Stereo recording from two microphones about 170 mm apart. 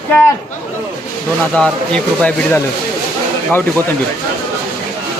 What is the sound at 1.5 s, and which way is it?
Speech, 5° left (ahead or behind).